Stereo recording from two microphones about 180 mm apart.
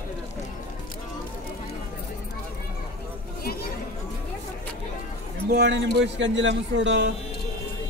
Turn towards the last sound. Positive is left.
turn(degrees=-90)